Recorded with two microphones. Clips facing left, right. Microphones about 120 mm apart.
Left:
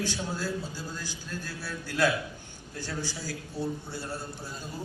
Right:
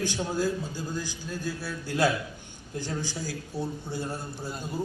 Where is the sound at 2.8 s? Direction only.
15° right (ahead or behind).